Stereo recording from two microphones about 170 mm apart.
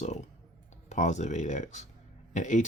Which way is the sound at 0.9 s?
45° left (ahead or behind).